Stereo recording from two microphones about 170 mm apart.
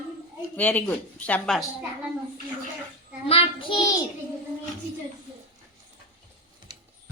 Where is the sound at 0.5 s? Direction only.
10° left (ahead or behind).